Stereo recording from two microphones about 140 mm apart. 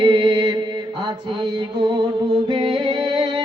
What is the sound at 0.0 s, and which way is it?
Mantra, 35° right (ahead or behind).